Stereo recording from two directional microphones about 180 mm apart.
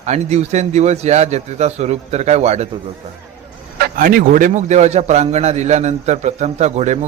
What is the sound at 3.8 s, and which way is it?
A man's voice, 50° right (ahead or behind).